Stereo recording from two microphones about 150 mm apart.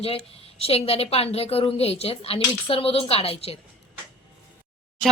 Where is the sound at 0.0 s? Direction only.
40° left (ahead or behind).